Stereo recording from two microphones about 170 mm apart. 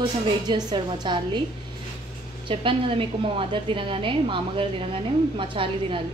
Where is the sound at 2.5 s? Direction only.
30° right (ahead or behind).